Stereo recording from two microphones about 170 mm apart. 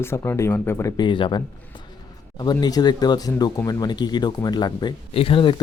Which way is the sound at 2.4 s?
25° left (ahead or behind).